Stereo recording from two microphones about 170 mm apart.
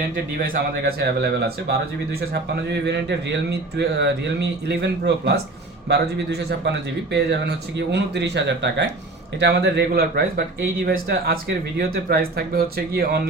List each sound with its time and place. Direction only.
0.3 s speech: 60° right (ahead or behind)
2.8 s a man's voice: 90° right; by 13.2 s 70° right (ahead or behind)